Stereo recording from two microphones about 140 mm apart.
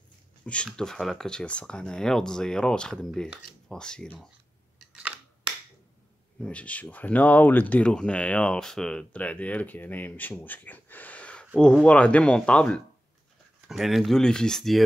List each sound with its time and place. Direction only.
0.7 s speech: 5° left (ahead or behind)
4.7 s camera: 5° right (ahead or behind)
6.4 s speech: 10° left (ahead or behind)